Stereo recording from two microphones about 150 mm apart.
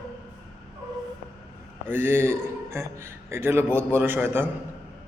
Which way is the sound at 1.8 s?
15° right (ahead or behind).